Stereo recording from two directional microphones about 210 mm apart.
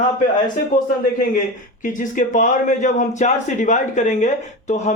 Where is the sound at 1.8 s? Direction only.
40° left (ahead or behind).